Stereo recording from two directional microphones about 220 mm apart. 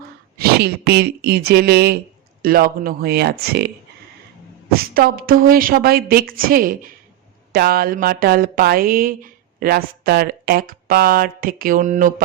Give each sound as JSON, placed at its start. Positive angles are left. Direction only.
{"t": 0.3, "sound": "speech", "side_deg": -45}
{"t": 4.7, "sound": "speech", "side_deg": -45}